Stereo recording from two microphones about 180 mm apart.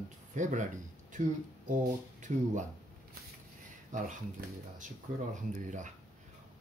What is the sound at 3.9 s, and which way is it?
Speech, 45° right (ahead or behind).